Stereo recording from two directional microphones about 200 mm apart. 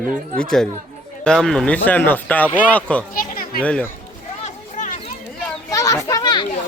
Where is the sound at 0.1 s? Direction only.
5° left (ahead or behind).